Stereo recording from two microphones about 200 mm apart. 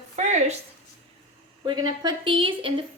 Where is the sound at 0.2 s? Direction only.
35° right (ahead or behind).